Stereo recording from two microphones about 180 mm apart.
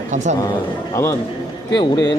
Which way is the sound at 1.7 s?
20° left (ahead or behind).